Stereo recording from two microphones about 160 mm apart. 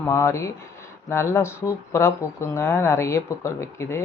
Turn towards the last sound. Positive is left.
turn(degrees=15)  # may be behind; listen again after turning